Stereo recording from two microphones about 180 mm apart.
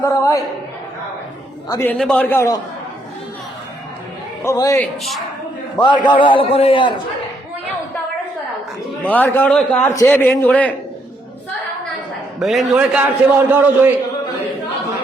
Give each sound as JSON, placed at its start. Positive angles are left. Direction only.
{"t": 0.0, "sound": "a sound", "side_deg": 15}
{"t": 1.7, "sound": "a man's voice", "side_deg": 10}
{"t": 4.4, "sound": "a man's voice", "side_deg": 20}
{"t": 9.0, "sound": "a man's voice", "side_deg": 10}
{"t": 12.4, "sound": "a man's voice", "side_deg": 0}